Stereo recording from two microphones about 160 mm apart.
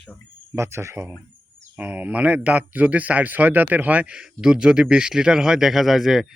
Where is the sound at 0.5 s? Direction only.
15° right (ahead or behind).